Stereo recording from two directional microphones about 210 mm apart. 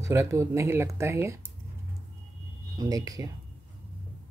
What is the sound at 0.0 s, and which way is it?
Speech, 15° right (ahead or behind).